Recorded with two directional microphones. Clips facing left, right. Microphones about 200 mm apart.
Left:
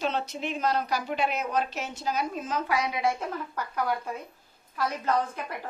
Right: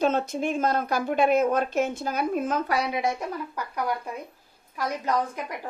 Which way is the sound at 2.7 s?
30° right (ahead or behind).